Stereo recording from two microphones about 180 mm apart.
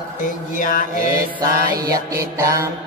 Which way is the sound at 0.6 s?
50° left (ahead or behind).